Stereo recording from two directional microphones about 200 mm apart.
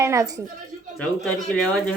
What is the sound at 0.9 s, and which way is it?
Speech, 5° left (ahead or behind).